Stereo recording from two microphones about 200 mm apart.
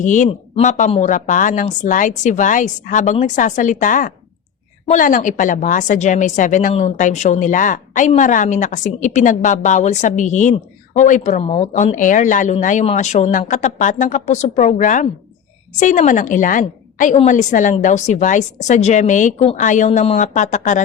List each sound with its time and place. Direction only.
0.0 s a woman's voice: 40° left (ahead or behind)